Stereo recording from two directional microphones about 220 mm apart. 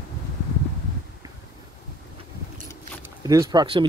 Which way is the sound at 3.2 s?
15° right (ahead or behind).